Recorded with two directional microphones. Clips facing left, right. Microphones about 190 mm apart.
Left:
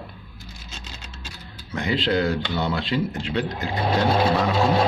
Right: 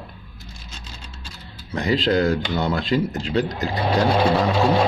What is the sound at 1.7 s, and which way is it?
Speech, 40° right (ahead or behind).